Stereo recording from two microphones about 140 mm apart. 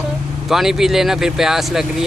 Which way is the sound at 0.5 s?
5° right (ahead or behind).